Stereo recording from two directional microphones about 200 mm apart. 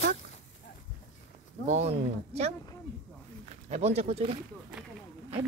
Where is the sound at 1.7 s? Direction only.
35° right (ahead or behind).